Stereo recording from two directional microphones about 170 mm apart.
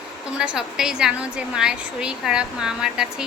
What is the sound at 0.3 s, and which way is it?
A woman's voice, 5° right (ahead or behind).